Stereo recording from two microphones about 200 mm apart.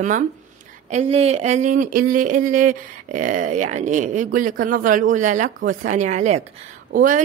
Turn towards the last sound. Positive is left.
turn(degrees=-40)  # may be behind; listen again after turning